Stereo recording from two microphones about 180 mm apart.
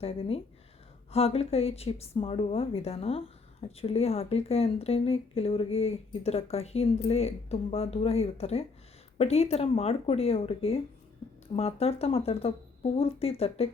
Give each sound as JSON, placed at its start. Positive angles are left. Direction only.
{"t": 0.0, "sound": "speech", "side_deg": 30}